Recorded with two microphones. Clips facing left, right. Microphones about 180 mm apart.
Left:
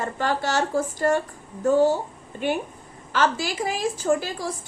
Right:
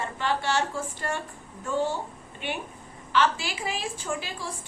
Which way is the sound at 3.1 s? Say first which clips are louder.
Left 2 dB; 40° left (ahead or behind).